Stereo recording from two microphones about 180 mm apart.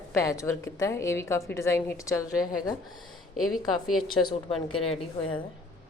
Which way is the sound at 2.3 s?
5° right (ahead or behind).